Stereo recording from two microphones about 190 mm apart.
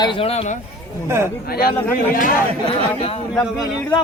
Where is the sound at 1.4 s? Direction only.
55° left (ahead or behind).